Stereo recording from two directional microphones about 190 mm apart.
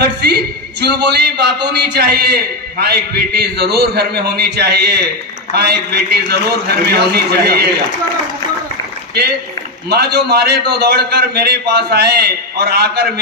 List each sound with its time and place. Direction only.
0.0 s a man's voice: 60° right (ahead or behind)
9.8 s a man's voice: 60° right (ahead or behind)